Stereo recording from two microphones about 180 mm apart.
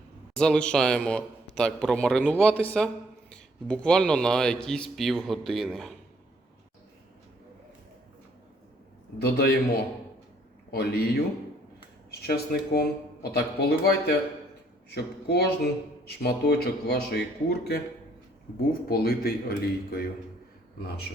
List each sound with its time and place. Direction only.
0.3 s a man's voice: 5° left (ahead or behind)
9.1 s a man's voice: 60° left (ahead or behind)
18.9 s a man's voice: 55° left (ahead or behind)